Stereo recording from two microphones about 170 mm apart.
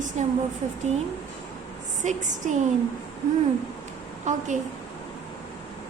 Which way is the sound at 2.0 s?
45° right (ahead or behind).